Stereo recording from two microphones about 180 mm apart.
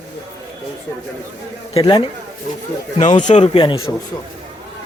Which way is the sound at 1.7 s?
30° left (ahead or behind).